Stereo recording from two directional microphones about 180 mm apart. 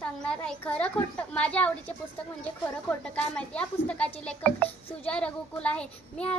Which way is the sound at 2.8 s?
5° left (ahead or behind).